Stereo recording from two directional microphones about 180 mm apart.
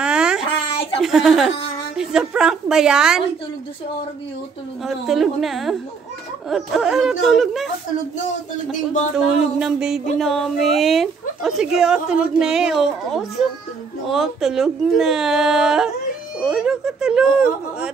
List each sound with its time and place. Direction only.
0.0 s a sound: 5° right (ahead or behind)
1.0 s a woman's voice: centre (ahead or behind)
1.5 s speech: 30° left (ahead or behind)
2.0 s a woman's voice: 5° right (ahead or behind)
4.8 s a woman's voice: centre (ahead or behind)
9.1 s a woman's voice: 5° right (ahead or behind)